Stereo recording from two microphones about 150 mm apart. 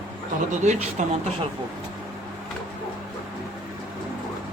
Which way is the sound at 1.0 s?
55° right (ahead or behind).